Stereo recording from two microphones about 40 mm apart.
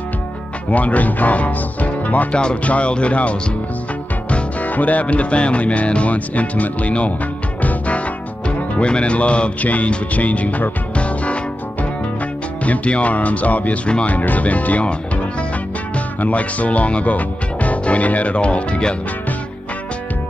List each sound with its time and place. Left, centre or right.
0.7 s speech: left
2.6 s music: left
4.3 s music: left
12.6 s music: left
16.2 s music: left